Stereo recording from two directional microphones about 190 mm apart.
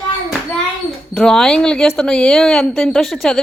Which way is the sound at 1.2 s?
5° left (ahead or behind).